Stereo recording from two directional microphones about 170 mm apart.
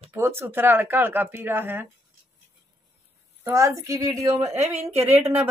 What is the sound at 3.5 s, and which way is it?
Speech, 15° right (ahead or behind).